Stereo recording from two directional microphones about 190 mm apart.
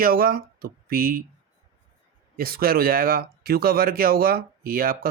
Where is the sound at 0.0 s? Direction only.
50° right (ahead or behind).